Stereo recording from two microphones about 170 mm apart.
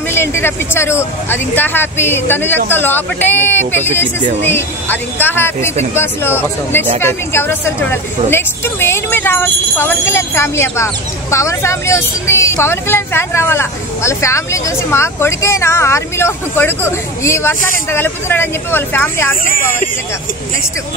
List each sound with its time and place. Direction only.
0.1 s a woman's voice: 15° left (ahead or behind)
4.2 s speech: 40° right (ahead or behind)
4.5 s a woman's voice: 10° left (ahead or behind)
19.4 s speech: 55° left (ahead or behind)